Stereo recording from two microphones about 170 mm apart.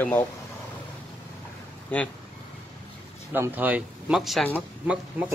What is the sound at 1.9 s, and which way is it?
Speech, 10° left (ahead or behind).